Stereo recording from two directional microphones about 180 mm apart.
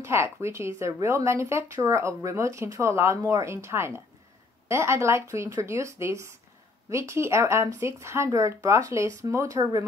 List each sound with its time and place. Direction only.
0.0 s speech: 15° right (ahead or behind)